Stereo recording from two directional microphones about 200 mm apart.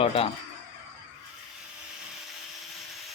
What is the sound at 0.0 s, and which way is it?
Speech, 30° left (ahead or behind).